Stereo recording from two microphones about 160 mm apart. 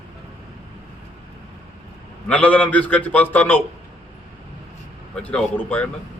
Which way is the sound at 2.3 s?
10° left (ahead or behind).